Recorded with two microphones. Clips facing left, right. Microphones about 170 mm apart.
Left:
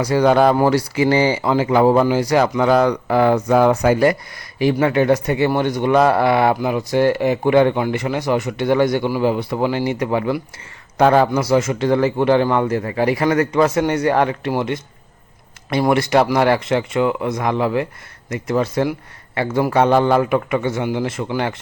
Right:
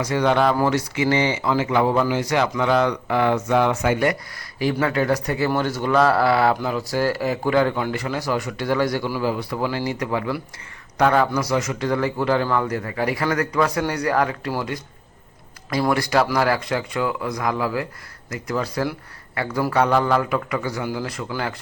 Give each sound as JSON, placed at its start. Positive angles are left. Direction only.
{"t": 0.0, "sound": "speech", "side_deg": 35}
{"t": 4.7, "sound": "speech", "side_deg": 20}